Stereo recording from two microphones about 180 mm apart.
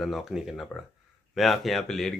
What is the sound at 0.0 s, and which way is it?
Speech, centre (ahead or behind).